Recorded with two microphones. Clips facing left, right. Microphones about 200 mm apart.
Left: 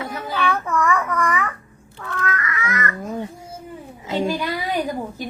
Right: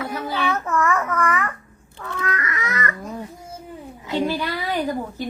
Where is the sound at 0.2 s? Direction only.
10° right (ahead or behind).